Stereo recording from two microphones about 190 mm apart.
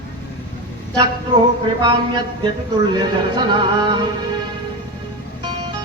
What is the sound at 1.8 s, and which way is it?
Speech, 25° right (ahead or behind).